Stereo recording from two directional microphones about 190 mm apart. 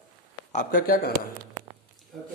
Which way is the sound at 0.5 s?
45° left (ahead or behind).